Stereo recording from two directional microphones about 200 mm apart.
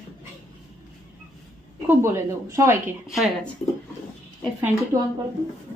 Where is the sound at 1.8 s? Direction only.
10° right (ahead or behind).